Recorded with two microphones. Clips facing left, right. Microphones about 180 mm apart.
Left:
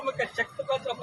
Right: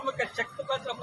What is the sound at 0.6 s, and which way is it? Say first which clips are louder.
Speech: left 5 dB; 10° left (ahead or behind).